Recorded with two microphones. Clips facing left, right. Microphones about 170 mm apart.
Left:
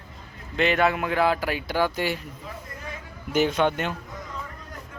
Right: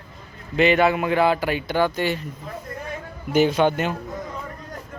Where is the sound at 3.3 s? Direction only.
Centre (ahead or behind).